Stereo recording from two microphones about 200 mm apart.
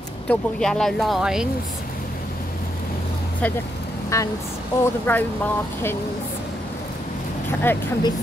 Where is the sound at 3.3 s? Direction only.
10° left (ahead or behind).